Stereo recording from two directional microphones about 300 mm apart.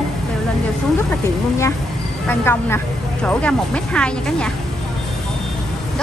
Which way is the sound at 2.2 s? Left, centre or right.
Centre.